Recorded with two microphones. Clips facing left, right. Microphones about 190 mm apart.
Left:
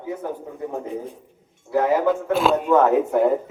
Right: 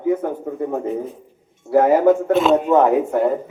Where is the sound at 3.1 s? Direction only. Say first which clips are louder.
Even; 5° left (ahead or behind).